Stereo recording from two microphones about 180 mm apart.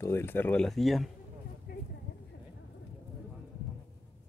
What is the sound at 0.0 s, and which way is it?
Speech, 15° left (ahead or behind).